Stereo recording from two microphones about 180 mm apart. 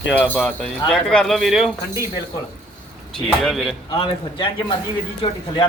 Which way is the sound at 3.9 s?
30° left (ahead or behind).